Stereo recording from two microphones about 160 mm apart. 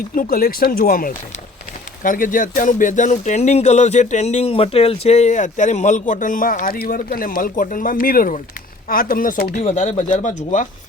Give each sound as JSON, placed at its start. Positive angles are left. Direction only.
{"t": 0.2, "sound": "speech", "side_deg": 65}